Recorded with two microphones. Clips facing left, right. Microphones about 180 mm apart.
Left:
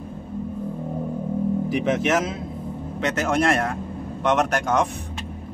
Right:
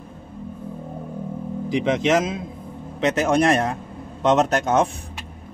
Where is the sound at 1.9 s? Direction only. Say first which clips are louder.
Right 3 dB; 15° right (ahead or behind).